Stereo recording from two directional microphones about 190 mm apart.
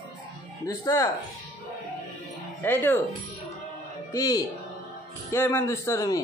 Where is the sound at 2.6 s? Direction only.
10° left (ahead or behind).